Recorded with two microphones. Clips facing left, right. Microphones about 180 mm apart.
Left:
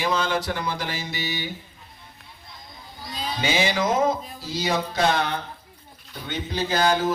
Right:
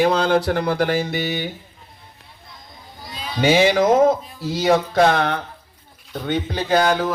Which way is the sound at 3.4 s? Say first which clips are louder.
Right 9 dB; 55° right (ahead or behind).